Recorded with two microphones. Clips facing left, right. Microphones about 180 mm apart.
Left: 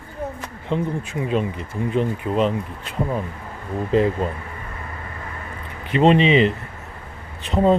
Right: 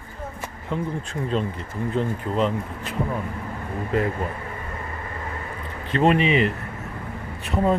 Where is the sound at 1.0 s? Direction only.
10° left (ahead or behind).